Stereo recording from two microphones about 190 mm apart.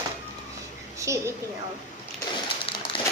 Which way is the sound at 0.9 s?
15° right (ahead or behind).